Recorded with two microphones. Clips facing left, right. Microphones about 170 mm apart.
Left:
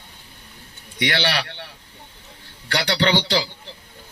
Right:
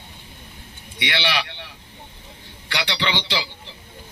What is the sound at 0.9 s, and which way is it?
Speech, 45° left (ahead or behind).